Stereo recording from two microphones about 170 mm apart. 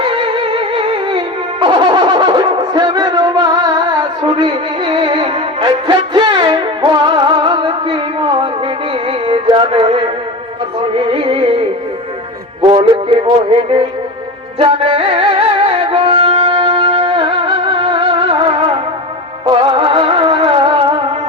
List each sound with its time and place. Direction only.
0.0 s music: 30° right (ahead or behind)
12.6 s music: 30° right (ahead or behind)
14.6 s music: 35° right (ahead or behind)